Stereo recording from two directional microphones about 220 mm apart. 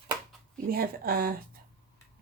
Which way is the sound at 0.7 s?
40° right (ahead or behind).